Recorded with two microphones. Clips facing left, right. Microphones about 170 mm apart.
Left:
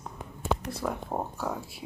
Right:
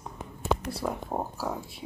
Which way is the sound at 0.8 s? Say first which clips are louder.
Even; 5° right (ahead or behind).